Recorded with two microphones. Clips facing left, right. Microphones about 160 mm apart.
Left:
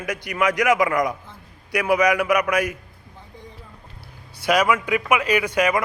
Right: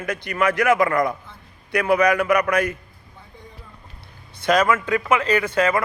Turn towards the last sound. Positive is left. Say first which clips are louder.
# right 1 dB
turn(degrees=15)  # may be behind; listen again after turning